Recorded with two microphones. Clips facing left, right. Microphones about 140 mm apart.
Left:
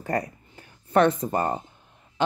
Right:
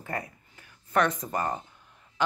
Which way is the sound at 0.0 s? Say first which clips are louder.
Left 8 dB; 40° left (ahead or behind).